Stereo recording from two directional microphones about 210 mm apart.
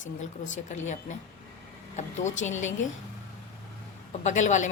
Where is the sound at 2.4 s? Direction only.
35° left (ahead or behind).